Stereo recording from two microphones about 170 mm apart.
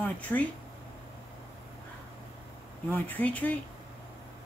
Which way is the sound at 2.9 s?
10° left (ahead or behind).